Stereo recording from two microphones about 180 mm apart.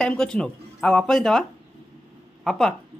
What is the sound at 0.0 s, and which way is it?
Speech, 5° left (ahead or behind).